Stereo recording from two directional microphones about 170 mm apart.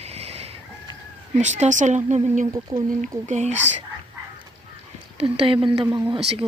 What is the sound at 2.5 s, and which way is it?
Speech, 20° right (ahead or behind).